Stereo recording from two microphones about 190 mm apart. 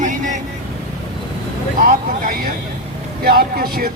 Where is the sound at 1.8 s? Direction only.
45° right (ahead or behind).